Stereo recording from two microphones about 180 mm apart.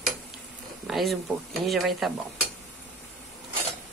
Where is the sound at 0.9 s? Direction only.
Centre (ahead or behind).